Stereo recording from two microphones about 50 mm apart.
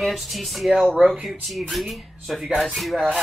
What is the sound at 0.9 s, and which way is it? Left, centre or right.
Speech, centre.